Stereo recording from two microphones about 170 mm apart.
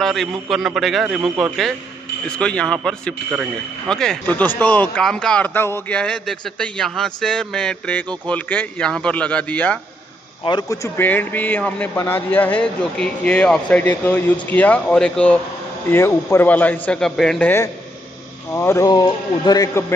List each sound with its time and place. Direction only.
0.0 s a man's voice: centre (ahead or behind)
10.4 s a man's voice: 25° left (ahead or behind)